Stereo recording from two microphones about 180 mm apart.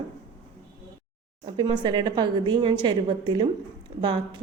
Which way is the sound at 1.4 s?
25° right (ahead or behind).